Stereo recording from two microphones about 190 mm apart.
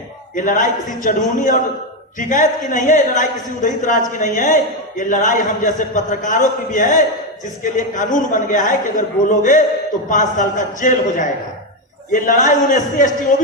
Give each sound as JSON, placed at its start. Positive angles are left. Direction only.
{"t": 0.3, "sound": "a man's voice", "side_deg": 45}